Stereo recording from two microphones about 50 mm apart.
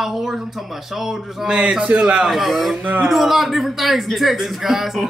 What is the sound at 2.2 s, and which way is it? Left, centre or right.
A man's voice, centre.